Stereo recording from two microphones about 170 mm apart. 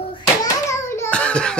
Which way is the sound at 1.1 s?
5° left (ahead or behind).